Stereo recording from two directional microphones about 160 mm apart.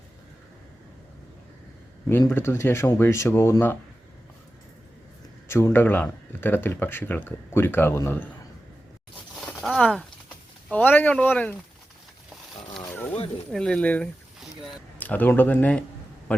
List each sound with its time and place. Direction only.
2.0 s speech: 15° left (ahead or behind)
5.5 s speech: 15° left (ahead or behind)
9.6 s a sound: centre (ahead or behind)
10.7 s speech: 10° left (ahead or behind)
12.9 s a sound: 10° left (ahead or behind)
13.5 s speech: 5° left (ahead or behind)